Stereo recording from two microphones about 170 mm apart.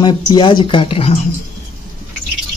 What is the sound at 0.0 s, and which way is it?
Speech, 25° left (ahead or behind).